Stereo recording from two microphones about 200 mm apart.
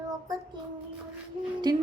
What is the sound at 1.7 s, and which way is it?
Speech, 20° right (ahead or behind).